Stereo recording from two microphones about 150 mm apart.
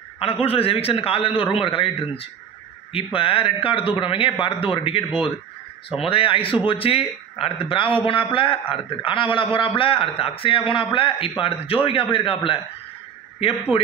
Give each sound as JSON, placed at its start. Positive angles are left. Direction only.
{"t": 0.2, "sound": "speech", "side_deg": 40}
{"t": 6.0, "sound": "speech", "side_deg": 35}
{"t": 13.4, "sound": "speech", "side_deg": 40}